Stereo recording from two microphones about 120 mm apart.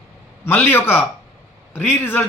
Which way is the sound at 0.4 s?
20° left (ahead or behind).